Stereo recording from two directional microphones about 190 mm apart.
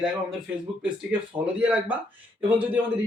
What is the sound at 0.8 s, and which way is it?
Speech, 5° right (ahead or behind).